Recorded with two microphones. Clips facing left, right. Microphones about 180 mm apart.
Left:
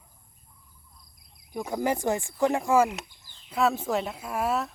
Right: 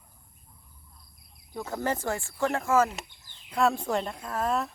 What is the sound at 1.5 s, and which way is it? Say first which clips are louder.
Speech: left 3 dB; 15° left (ahead or behind).